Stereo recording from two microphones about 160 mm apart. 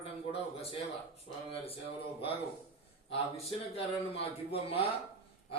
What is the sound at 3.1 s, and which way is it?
Speech, 40° left (ahead or behind).